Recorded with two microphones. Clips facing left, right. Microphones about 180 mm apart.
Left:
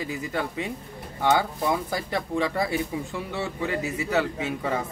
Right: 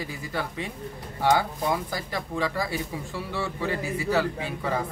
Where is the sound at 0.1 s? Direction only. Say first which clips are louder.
Left 3 dB; 20° left (ahead or behind).